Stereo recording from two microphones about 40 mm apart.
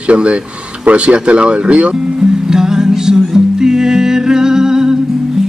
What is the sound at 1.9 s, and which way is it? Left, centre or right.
Music, centre.